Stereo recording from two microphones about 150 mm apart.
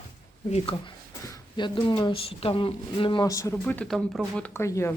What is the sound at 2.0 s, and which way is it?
A woman's voice, 40° left (ahead or behind).